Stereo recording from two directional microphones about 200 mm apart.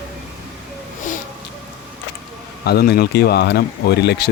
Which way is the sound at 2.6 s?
55° left (ahead or behind).